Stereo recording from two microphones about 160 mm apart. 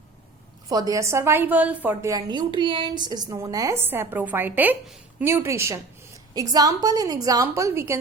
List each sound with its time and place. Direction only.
0.7 s a woman's voice: 20° right (ahead or behind)